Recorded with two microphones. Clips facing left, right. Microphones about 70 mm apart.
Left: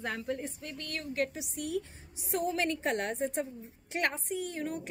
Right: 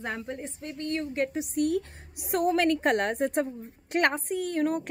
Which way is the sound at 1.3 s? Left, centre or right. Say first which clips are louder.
Right 9 dB; right.